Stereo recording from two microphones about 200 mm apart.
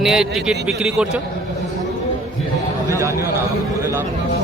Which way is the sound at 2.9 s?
15° right (ahead or behind).